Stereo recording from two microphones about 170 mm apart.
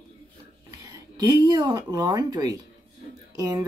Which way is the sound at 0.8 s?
20° right (ahead or behind).